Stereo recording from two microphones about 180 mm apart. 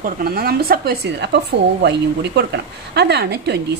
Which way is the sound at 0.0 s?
60° right (ahead or behind).